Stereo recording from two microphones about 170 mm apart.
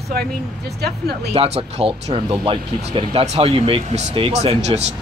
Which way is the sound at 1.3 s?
35° right (ahead or behind).